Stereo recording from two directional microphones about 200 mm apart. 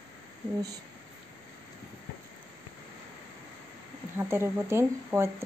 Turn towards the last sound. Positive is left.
turn(degrees=-10)  # may be behind; listen again after turning